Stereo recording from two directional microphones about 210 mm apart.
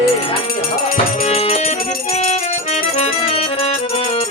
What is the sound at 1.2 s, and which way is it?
Music, 30° left (ahead or behind).